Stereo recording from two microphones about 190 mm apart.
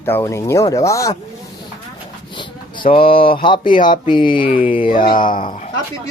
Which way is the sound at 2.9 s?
30° left (ahead or behind).